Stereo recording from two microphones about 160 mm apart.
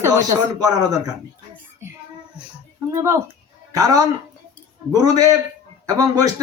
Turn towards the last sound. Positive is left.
turn(degrees=-20)  # may be behind; listen again after turning